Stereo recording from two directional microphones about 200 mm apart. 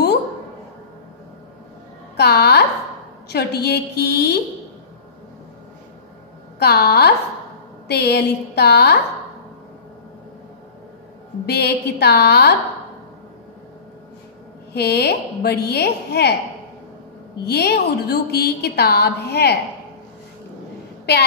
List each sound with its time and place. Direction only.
2.1 s a woman's voice: 55° left (ahead or behind)
6.6 s a woman's voice: 50° left (ahead or behind)
11.4 s a woman's voice: 55° left (ahead or behind)
14.7 s a woman's voice: 55° left (ahead or behind)
17.5 s a woman's voice: 55° left (ahead or behind)